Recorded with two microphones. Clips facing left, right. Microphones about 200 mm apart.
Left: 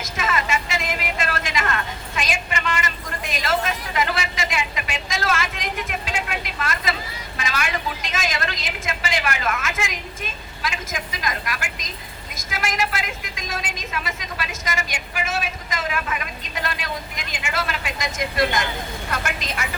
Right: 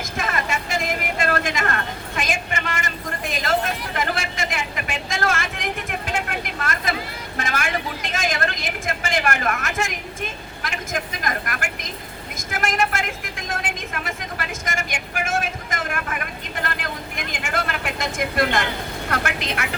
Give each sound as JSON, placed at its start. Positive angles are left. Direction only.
{"t": 0.0, "sound": "vehicle", "side_deg": -55}
{"t": 10.6, "sound": "a woman's voice", "side_deg": -55}
{"t": 12.5, "sound": "vehicle", "side_deg": -55}